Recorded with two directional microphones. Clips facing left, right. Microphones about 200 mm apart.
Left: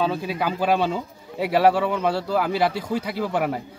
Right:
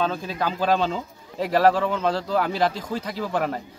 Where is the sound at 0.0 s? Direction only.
10° left (ahead or behind).